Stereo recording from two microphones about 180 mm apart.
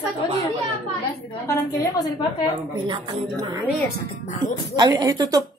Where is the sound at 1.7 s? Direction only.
20° left (ahead or behind).